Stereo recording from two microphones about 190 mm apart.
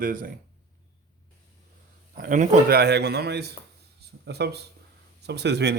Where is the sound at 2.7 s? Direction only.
60° right (ahead or behind).